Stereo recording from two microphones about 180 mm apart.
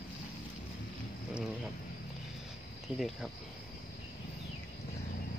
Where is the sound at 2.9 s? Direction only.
Centre (ahead or behind).